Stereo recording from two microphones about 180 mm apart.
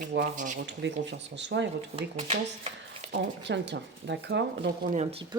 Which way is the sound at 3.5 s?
75° right (ahead or behind).